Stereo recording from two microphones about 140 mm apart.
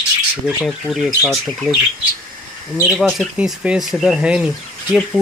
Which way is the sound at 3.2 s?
5° right (ahead or behind).